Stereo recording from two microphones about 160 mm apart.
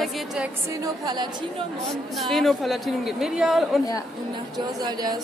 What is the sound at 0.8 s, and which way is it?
Speech, 25° right (ahead or behind).